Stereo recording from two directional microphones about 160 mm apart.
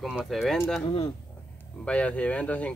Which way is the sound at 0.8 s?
35° left (ahead or behind).